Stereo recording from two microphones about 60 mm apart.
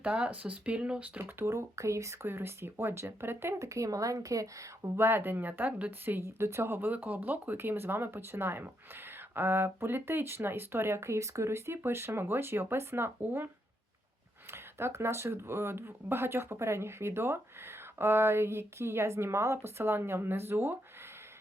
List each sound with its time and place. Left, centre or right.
0.0 s speech: right
1.2 s speech: right
2.2 s speech: right
3.8 s a woman's voice: right
4.9 s speech: right
6.8 s speech: right
14.5 s speech: right